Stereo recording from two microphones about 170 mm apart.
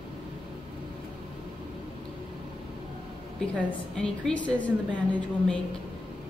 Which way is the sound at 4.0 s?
5° left (ahead or behind).